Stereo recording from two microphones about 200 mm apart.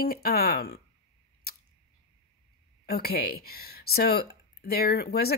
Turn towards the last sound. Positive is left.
turn(degrees=50)  # may be behind; listen again after turning